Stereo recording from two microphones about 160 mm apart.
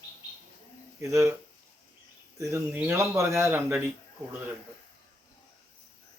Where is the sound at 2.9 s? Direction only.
20° right (ahead or behind).